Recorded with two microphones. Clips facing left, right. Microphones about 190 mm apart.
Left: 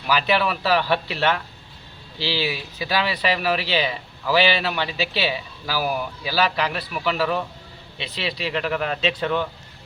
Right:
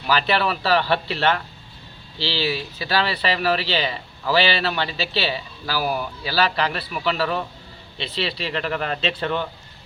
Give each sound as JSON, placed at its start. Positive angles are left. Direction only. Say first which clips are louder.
{"t": 0.1, "sound": "speech", "louder": "even", "side_deg": 10}